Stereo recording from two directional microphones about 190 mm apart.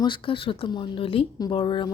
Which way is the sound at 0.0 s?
25° left (ahead or behind).